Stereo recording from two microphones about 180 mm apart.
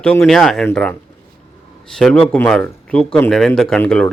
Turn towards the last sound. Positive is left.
turn(degrees=5)  # may be behind; listen again after turning